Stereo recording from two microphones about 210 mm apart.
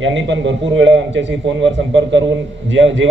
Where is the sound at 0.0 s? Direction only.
60° right (ahead or behind).